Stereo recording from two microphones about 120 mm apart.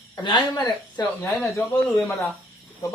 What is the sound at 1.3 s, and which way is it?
Speech, centre (ahead or behind).